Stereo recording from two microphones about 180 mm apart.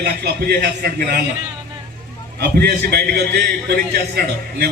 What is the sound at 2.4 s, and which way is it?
A man's voice, 60° right (ahead or behind).